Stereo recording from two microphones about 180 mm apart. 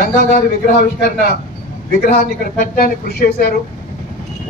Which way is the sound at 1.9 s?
65° left (ahead or behind).